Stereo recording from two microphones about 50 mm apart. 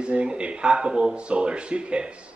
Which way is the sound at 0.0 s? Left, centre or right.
Right.